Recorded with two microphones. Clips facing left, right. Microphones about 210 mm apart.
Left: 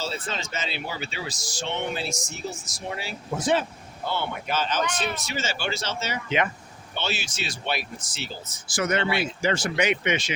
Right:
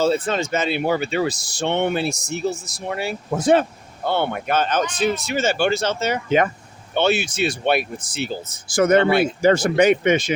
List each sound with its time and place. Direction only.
0.0 s speech: 55° right (ahead or behind)